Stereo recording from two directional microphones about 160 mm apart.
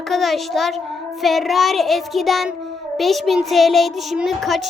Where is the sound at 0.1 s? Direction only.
Centre (ahead or behind).